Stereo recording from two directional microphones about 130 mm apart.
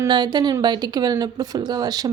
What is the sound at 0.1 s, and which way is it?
Speech, 35° right (ahead or behind).